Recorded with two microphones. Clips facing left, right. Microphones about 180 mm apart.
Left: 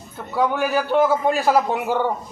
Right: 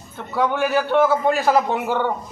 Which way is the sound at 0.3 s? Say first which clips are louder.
Right 1 dB; 10° left (ahead or behind).